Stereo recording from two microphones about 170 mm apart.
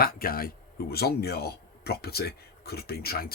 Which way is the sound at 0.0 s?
60° left (ahead or behind).